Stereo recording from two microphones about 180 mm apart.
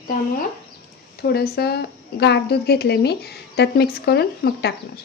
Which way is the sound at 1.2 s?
60° left (ahead or behind).